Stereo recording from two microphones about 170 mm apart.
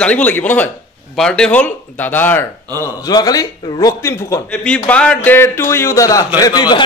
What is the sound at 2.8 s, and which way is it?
A man's voice, 20° left (ahead or behind).